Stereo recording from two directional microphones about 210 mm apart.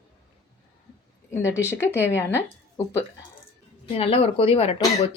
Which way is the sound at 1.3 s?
10° left (ahead or behind).